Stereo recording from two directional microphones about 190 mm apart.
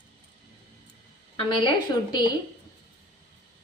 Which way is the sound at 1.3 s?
25° left (ahead or behind).